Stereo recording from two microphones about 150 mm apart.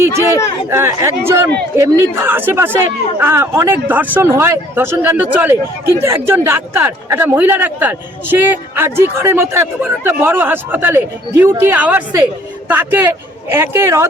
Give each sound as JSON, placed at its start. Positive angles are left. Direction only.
{"t": 0.7, "sound": "a man's voice", "side_deg": -20}